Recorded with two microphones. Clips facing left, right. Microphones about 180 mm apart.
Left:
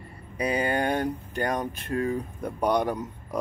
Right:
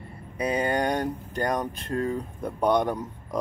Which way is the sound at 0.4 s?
30° right (ahead or behind).